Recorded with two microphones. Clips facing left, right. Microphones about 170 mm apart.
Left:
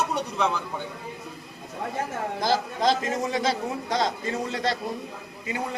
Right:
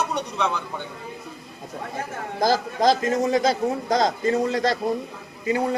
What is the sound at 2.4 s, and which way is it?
A man's voice, 40° right (ahead or behind).